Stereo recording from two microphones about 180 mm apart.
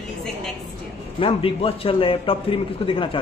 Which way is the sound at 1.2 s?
30° left (ahead or behind).